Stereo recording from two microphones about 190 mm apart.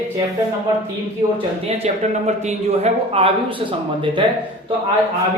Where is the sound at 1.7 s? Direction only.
35° right (ahead or behind).